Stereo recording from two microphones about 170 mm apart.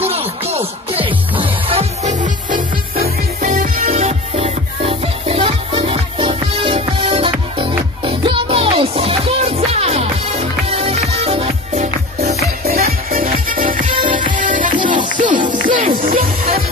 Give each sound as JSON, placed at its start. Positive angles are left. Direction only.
{"t": 0.0, "sound": "music", "side_deg": -35}
{"t": 12.6, "sound": "music", "side_deg": -60}